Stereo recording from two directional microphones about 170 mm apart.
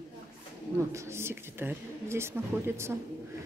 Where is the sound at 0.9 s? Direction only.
15° right (ahead or behind).